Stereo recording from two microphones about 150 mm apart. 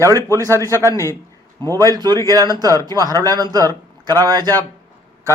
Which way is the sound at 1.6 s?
30° right (ahead or behind).